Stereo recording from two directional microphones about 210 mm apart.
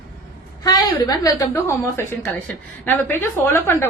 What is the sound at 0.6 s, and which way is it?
A woman's voice, 20° left (ahead or behind).